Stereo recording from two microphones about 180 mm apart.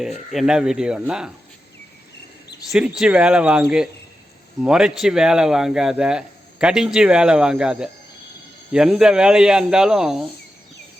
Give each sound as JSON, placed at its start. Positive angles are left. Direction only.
{"t": 0.0, "sound": "speech", "side_deg": 0}
{"t": 2.7, "sound": "speech", "side_deg": -5}